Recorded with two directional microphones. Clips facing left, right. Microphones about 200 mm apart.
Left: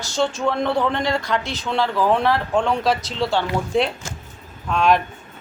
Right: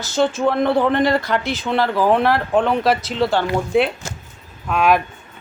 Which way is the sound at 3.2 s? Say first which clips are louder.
Right 2 dB; centre (ahead or behind).